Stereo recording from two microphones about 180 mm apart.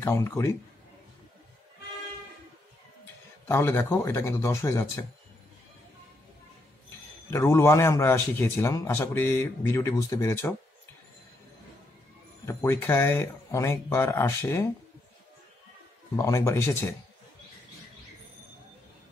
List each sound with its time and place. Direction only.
0.0 s a man's voice: 15° left (ahead or behind)
3.4 s a man's voice: 10° left (ahead or behind)
7.2 s a man's voice: 15° left (ahead or behind)
12.4 s a man's voice: 15° left (ahead or behind)
16.2 s a man's voice: 15° left (ahead or behind)